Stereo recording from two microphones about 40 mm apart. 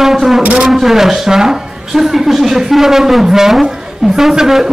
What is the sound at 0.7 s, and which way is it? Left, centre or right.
A woman's voice, centre.